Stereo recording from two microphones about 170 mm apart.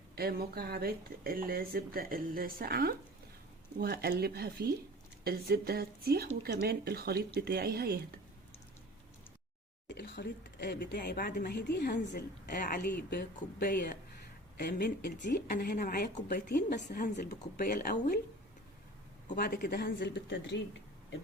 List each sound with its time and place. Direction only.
0.2 s speech: 65° right (ahead or behind)
9.9 s speech: 75° left (ahead or behind)
12.5 s a woman's voice: 60° left (ahead or behind)
15.2 s a woman's voice: 60° left (ahead or behind)
16.7 s a woman's voice: 50° left (ahead or behind)
19.3 s speech: 60° left (ahead or behind); by 20.6 s 90° left